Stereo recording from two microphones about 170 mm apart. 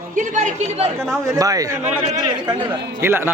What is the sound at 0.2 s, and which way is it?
Speech, 45° right (ahead or behind).